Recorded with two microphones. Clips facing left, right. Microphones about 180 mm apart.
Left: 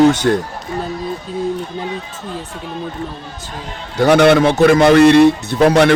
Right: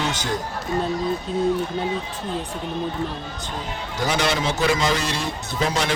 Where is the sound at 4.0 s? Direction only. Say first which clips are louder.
Left 13 dB; 60° left (ahead or behind).